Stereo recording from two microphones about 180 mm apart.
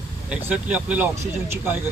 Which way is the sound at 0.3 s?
5° right (ahead or behind).